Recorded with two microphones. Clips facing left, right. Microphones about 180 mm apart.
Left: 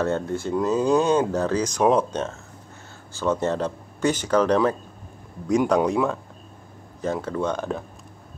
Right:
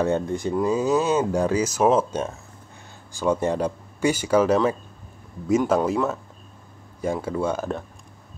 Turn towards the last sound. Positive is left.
turn(degrees=0)  # may be behind; listen again after turning